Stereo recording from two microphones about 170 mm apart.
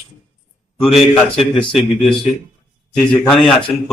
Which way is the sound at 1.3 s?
30° left (ahead or behind).